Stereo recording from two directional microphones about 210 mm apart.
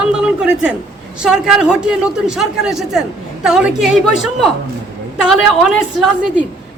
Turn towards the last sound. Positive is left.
turn(degrees=-5)  # may be behind; listen again after turning